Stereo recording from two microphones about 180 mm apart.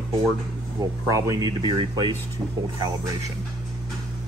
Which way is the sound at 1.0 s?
20° right (ahead or behind).